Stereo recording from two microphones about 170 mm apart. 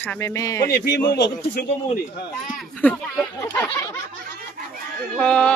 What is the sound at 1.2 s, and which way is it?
Speech, 75° left (ahead or behind).